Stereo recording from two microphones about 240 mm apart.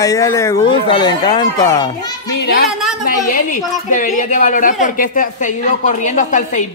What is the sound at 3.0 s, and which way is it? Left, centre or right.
A woman's voice, left.